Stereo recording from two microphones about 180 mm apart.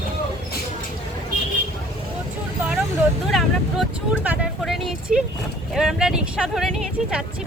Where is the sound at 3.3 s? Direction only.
Centre (ahead or behind).